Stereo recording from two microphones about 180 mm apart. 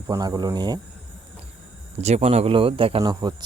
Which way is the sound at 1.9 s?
35° right (ahead or behind).